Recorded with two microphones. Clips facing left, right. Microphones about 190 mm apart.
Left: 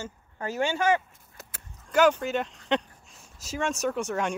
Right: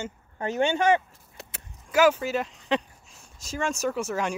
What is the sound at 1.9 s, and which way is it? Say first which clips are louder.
Speech: right 1 dB; 5° right (ahead or behind).